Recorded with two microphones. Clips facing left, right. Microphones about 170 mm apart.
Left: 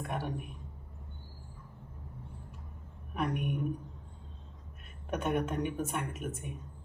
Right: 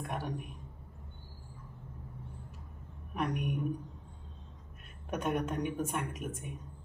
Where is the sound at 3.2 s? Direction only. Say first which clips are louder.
Left 1 dB; centre (ahead or behind).